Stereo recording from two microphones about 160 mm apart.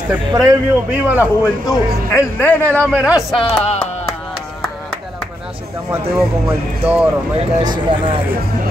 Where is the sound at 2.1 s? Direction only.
15° left (ahead or behind).